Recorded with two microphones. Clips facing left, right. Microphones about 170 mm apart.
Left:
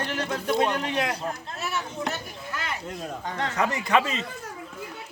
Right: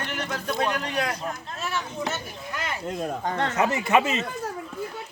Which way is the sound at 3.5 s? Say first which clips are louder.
Right 1 dB; 25° right (ahead or behind).